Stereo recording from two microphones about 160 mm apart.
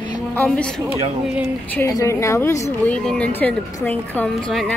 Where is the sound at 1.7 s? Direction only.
20° left (ahead or behind).